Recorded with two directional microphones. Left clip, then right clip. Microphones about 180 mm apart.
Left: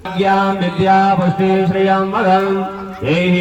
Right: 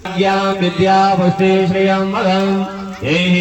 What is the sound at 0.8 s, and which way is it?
Music, 25° left (ahead or behind).